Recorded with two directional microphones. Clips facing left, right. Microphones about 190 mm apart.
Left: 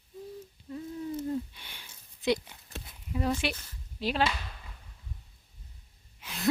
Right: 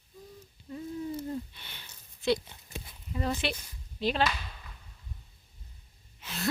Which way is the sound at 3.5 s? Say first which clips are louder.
Right 3 dB; 15° right (ahead or behind).